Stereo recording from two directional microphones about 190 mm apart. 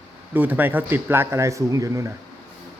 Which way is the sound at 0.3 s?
10° right (ahead or behind).